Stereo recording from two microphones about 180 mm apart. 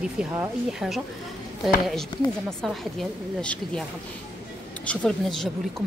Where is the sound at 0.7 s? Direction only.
Centre (ahead or behind).